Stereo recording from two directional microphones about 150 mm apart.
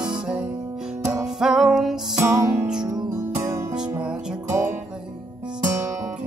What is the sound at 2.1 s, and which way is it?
Music, 20° right (ahead or behind).